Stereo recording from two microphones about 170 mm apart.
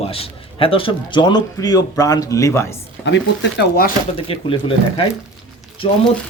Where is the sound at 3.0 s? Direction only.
90° left; by 3.9 s 70° left (ahead or behind).